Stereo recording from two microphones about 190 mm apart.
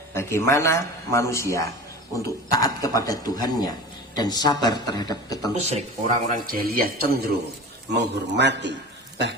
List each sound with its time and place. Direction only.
0.1 s a man's voice: 15° left (ahead or behind)
5.5 s speech: 35° right (ahead or behind); by 7.3 s 55° right (ahead or behind)
7.9 s a man's voice: 65° right (ahead or behind)